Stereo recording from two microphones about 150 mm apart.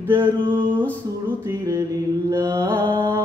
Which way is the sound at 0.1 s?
30° right (ahead or behind).